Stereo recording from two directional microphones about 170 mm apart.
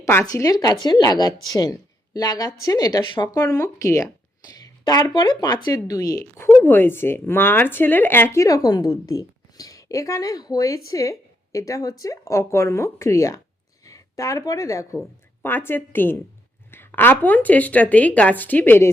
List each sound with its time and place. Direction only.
0.0 s speech: 15° left (ahead or behind)